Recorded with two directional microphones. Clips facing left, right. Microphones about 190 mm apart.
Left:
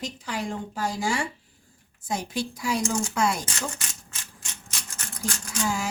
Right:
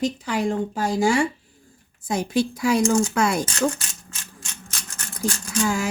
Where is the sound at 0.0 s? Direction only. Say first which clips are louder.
Right 9 dB; 55° right (ahead or behind).